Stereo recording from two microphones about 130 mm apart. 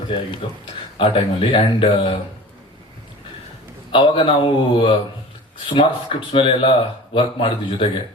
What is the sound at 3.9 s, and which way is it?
Speech, 40° left (ahead or behind).